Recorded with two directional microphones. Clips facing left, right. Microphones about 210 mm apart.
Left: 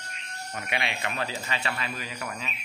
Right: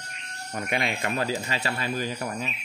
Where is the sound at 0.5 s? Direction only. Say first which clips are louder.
Right 4 dB; 45° right (ahead or behind).